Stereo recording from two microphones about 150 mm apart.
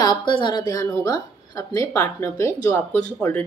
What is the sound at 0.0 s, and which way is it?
A woman's voice, 30° left (ahead or behind).